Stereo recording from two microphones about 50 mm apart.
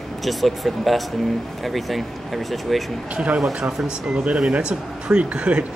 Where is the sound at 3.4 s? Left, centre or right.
Centre.